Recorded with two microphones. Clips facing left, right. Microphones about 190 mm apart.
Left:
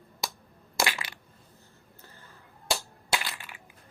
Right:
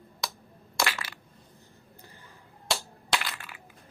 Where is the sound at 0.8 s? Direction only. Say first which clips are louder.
Left 1 dB; 15° left (ahead or behind).